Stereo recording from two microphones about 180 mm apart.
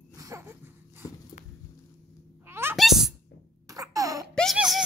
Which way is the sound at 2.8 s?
Centre (ahead or behind).